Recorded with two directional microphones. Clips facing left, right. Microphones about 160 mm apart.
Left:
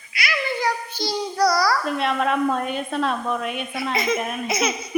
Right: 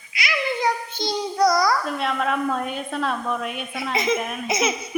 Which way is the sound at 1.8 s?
5° left (ahead or behind).